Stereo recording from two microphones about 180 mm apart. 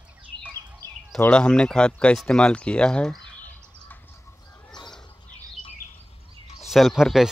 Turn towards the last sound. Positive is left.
turn(degrees=0)  # may be behind; listen again after turning